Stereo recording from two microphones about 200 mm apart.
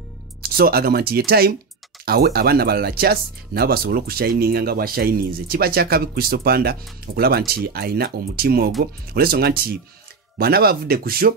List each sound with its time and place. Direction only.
0.4 s speech: 50° right (ahead or behind)